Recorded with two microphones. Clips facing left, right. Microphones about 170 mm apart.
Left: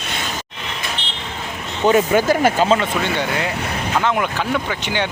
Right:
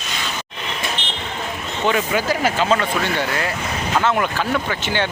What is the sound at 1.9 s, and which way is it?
Speech, 50° left (ahead or behind).